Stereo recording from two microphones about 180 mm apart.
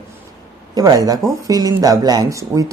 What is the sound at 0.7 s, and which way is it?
Speech, 20° right (ahead or behind).